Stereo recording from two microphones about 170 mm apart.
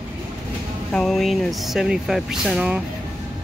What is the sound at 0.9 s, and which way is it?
Speech, centre (ahead or behind).